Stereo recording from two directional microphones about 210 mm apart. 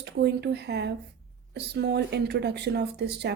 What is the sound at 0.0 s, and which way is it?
A woman's voice, 55° right (ahead or behind).